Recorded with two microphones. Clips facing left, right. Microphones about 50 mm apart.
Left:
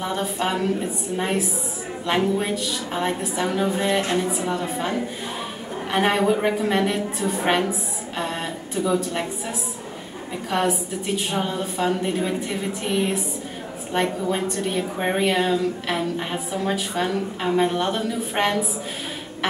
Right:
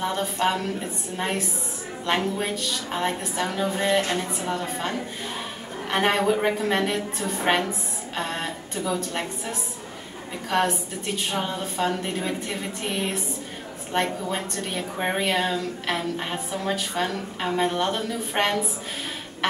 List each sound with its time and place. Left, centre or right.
0.0 s a woman's voice: centre
4.0 s a woman's voice: left
4.5 s a woman's voice: centre
8.2 s a sound: centre
8.7 s a woman's voice: centre
10.5 s a woman's voice: centre